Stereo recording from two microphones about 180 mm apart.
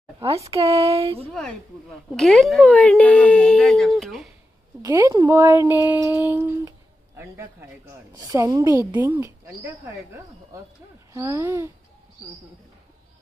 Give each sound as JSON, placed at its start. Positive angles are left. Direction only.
{"t": 0.3, "sound": "a sound", "side_deg": -30}
{"t": 1.3, "sound": "speech", "side_deg": 5}
{"t": 4.8, "sound": "a woman's voice", "side_deg": -20}